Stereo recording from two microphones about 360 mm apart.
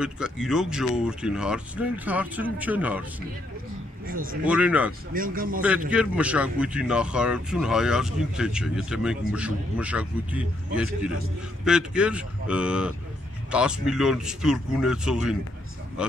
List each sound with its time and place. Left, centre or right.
0.0 s speech: centre
4.0 s speech: right
4.5 s speech: centre
5.1 s a man's voice: right
5.9 s speech: centre